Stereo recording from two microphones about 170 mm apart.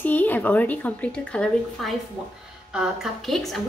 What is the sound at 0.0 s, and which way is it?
A woman's voice, 10° left (ahead or behind).